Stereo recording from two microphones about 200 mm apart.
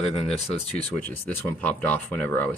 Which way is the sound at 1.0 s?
10° left (ahead or behind).